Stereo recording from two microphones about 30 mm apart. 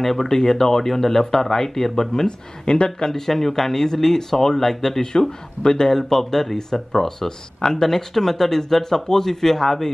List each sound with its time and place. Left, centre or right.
0.0 s speech: centre
2.2 s speech: left
3.1 s speech: centre
5.6 s speech: left
5.9 s speech: centre